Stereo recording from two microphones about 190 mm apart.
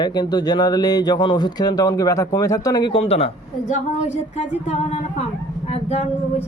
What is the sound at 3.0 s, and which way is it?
Speech, 35° left (ahead or behind).